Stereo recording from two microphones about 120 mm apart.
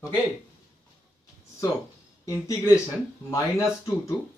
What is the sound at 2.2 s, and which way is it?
Speech, 25° left (ahead or behind).